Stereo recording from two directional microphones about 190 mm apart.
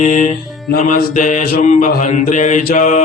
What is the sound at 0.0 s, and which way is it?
Mantra, 40° left (ahead or behind).